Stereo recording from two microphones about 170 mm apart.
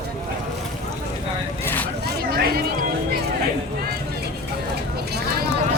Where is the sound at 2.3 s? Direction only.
65° right (ahead or behind).